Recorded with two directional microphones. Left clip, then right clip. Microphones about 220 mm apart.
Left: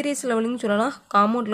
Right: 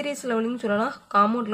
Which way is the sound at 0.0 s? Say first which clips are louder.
Left 2 dB; 25° left (ahead or behind).